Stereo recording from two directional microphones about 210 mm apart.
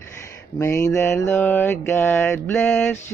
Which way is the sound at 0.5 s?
15° left (ahead or behind).